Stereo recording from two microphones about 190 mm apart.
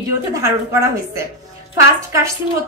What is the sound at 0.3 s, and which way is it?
A woman's voice, 15° right (ahead or behind).